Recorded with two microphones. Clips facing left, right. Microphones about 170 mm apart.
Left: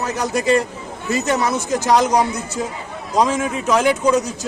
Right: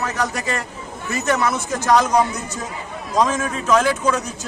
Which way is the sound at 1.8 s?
15° left (ahead or behind).